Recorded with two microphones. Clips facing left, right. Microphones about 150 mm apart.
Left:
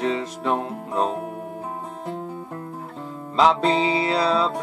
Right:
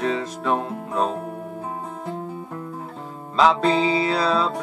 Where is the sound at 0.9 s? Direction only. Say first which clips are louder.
Even; 25° left (ahead or behind).